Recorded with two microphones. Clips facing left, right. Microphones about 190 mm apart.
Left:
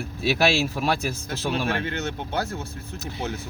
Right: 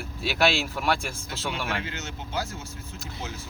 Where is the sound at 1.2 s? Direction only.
60° left (ahead or behind).